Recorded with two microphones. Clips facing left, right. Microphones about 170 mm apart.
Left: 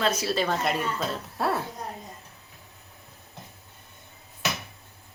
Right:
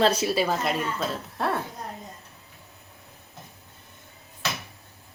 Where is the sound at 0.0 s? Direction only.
30° right (ahead or behind).